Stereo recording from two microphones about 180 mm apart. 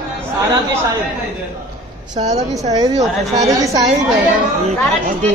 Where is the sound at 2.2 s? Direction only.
30° right (ahead or behind).